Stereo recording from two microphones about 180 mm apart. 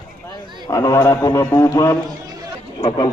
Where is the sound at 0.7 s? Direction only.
20° left (ahead or behind).